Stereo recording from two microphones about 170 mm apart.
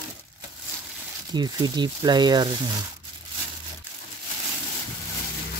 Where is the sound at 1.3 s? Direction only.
25° right (ahead or behind).